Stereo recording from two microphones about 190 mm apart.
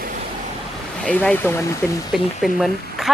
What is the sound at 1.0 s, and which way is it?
Speech, 10° left (ahead or behind).